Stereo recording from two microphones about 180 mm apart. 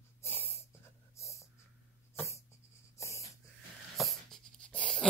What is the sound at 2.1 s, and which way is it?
Dog, 15° left (ahead or behind).